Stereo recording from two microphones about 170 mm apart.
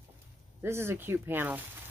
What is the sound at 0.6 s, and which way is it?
Speech, 15° right (ahead or behind).